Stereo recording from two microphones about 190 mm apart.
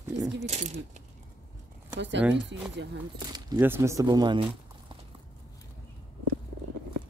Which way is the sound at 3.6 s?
15° right (ahead or behind).